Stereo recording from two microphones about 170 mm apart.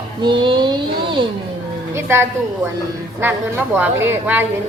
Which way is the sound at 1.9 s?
15° right (ahead or behind).